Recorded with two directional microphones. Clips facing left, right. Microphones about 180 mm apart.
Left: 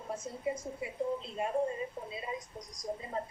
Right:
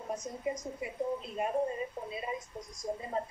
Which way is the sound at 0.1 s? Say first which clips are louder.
Even; 25° left (ahead or behind).